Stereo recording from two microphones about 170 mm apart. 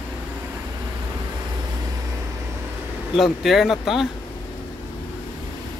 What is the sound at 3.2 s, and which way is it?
Speech, centre (ahead or behind).